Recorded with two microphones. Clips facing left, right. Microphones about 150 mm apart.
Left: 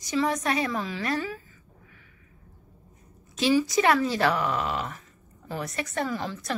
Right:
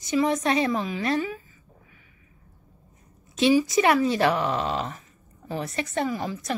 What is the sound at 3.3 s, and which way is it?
A woman's voice, 20° right (ahead or behind).